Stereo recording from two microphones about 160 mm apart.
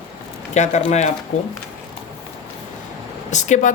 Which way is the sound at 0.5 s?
45° left (ahead or behind).